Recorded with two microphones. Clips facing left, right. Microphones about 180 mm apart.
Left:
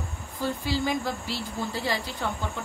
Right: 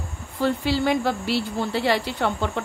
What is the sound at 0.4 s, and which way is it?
Speech, 70° right (ahead or behind).